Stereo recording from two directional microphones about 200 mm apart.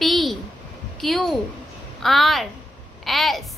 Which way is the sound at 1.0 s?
Centre (ahead or behind).